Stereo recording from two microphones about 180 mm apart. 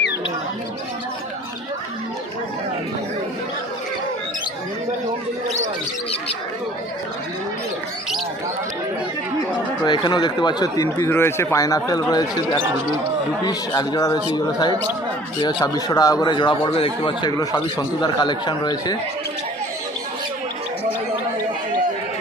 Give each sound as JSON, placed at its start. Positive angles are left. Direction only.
{"t": 9.8, "sound": "speech", "side_deg": 25}